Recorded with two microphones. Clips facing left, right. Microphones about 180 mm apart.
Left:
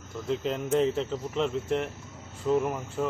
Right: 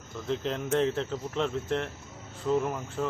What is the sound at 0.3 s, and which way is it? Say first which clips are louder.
Speech: left 2 dB; 5° left (ahead or behind).